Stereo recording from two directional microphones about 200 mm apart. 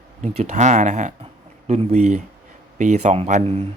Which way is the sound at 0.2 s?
35° right (ahead or behind).